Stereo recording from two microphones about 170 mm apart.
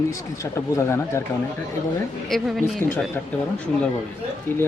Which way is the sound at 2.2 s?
Centre (ahead or behind).